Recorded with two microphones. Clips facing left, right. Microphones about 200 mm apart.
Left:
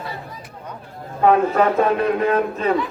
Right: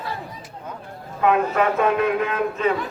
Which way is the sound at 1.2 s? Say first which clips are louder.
Left 3 dB; 35° left (ahead or behind).